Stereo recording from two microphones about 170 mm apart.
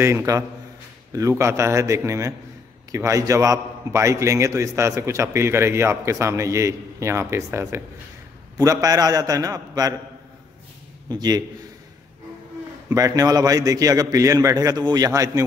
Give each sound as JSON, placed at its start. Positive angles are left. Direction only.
{"t": 0.0, "sound": "a man's voice", "side_deg": -15}
{"t": 11.1, "sound": "a man's voice", "side_deg": -25}
{"t": 12.9, "sound": "a man's voice", "side_deg": -20}